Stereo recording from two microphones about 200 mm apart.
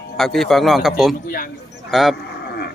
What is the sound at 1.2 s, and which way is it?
Speech, 45° left (ahead or behind).